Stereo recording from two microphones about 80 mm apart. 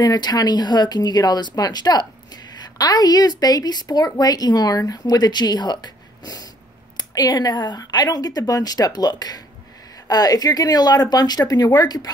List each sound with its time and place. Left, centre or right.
0.0 s a woman's voice: left